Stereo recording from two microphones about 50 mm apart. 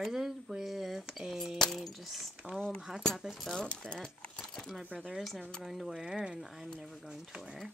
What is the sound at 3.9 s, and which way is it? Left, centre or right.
Keys jangling, centre.